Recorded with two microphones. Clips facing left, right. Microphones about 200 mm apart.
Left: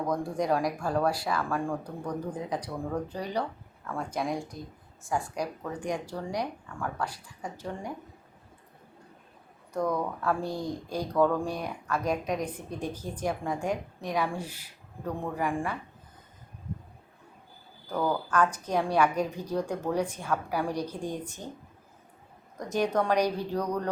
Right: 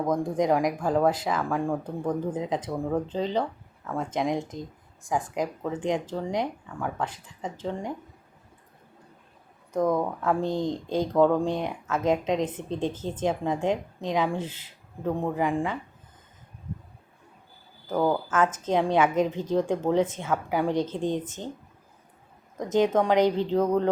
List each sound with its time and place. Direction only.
0.1 s speech: 20° right (ahead or behind)
9.7 s speech: 20° right (ahead or behind)
17.8 s speech: 20° right (ahead or behind)
22.5 s speech: 20° right (ahead or behind)